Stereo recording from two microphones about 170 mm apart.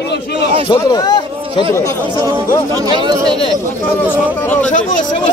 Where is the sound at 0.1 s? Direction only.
90° left.